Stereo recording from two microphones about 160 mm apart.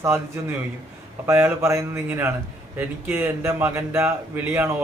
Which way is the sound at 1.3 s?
15° right (ahead or behind).